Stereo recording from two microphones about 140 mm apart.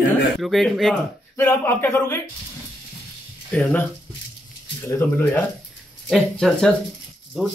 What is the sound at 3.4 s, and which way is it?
Speech, 10° left (ahead or behind).